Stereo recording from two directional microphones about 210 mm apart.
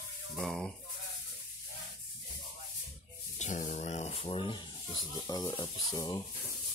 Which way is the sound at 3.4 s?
35° left (ahead or behind).